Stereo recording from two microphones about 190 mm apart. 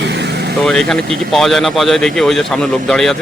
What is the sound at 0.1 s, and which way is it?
Vehicle, 65° right (ahead or behind).